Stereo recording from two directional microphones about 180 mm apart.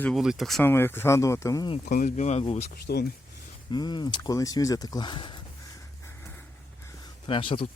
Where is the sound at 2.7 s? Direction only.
65° left (ahead or behind).